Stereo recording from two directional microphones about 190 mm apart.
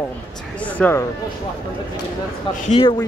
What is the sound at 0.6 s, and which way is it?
Speech, 10° left (ahead or behind).